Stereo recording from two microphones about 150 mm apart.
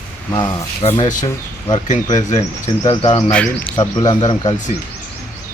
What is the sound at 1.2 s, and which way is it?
Speech, 30° left (ahead or behind).